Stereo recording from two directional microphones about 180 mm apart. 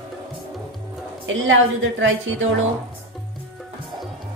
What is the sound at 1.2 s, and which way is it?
A woman's voice, 90° right.